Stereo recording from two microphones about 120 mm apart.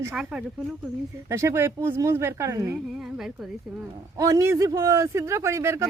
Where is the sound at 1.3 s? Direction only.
25° right (ahead or behind).